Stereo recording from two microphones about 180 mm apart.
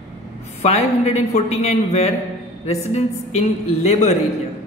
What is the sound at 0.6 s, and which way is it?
A man's voice, 40° left (ahead or behind).